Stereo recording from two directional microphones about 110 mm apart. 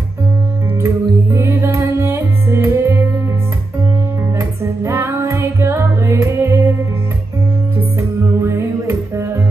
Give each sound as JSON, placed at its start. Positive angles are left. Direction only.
{"t": 0.8, "sound": "music", "side_deg": -25}
{"t": 4.4, "sound": "music", "side_deg": -25}
{"t": 8.4, "sound": "music", "side_deg": -25}